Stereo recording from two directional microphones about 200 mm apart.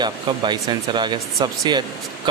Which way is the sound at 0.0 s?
20° right (ahead or behind).